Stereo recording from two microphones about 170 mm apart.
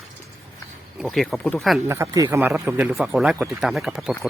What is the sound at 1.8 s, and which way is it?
Speech, 15° right (ahead or behind).